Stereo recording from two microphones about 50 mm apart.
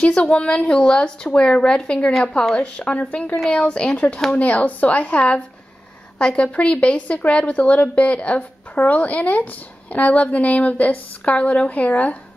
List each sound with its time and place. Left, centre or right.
0.0 s a woman's voice: left
2.1 s a woman's voice: centre
2.8 s speech: left